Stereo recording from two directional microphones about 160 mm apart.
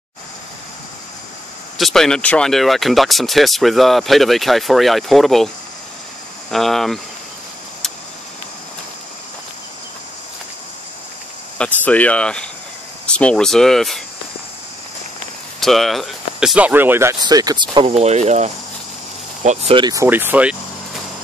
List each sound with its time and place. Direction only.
1.8 s speech: centre (ahead or behind)
6.5 s speech: centre (ahead or behind)
11.5 s speech: 10° left (ahead or behind)
15.6 s speech: centre (ahead or behind); by 17.8 s 25° right (ahead or behind)
17.8 s speech: 45° right (ahead or behind)
19.7 s speech: 25° right (ahead or behind)